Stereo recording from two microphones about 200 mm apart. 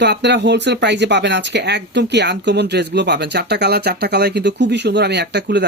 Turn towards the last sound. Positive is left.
turn(degrees=-55)  # may be behind; listen again after turning